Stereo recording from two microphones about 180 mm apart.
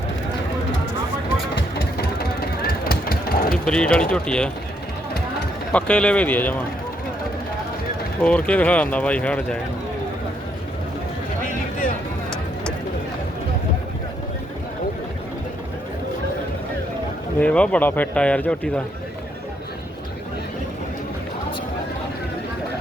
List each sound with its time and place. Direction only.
2.0 s vehicle: 60° left (ahead or behind)
3.5 s speech: 5° left (ahead or behind)
5.7 s speech: 5° left (ahead or behind)
8.2 s speech: 5° left (ahead or behind)
17.4 s speech: 5° left (ahead or behind)